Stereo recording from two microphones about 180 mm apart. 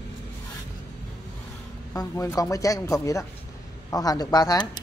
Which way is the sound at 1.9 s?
15° left (ahead or behind).